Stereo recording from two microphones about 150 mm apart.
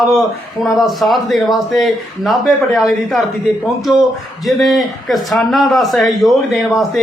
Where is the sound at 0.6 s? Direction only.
Centre (ahead or behind).